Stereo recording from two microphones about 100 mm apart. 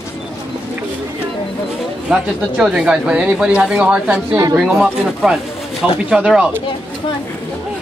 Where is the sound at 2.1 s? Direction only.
5° right (ahead or behind).